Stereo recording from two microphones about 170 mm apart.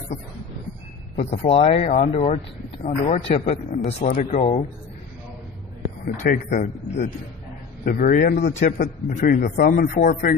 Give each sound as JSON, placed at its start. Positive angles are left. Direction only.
{"t": 1.1, "sound": "speech", "side_deg": 50}
{"t": 1.5, "sound": "speech", "side_deg": 40}
{"t": 6.0, "sound": "a man's voice", "side_deg": 55}